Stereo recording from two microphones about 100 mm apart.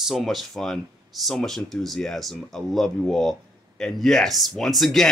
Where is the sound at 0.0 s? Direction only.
Centre (ahead or behind).